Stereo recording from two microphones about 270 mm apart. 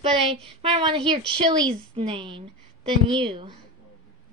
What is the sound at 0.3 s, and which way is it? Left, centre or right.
A woman's voice, right.